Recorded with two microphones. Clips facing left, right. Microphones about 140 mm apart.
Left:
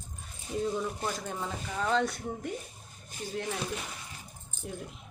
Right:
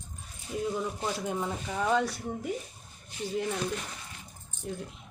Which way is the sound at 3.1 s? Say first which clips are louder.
Right 4 dB; 45° left (ahead or behind).